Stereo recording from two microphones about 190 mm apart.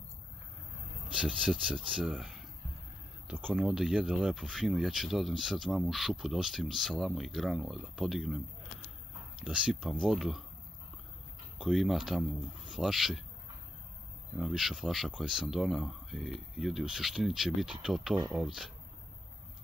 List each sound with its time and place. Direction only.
1.1 s speech: 5° right (ahead or behind)
3.4 s speech: centre (ahead or behind)
9.4 s speech: 5° right (ahead or behind)
11.5 s speech: centre (ahead or behind)
14.4 s speech: centre (ahead or behind)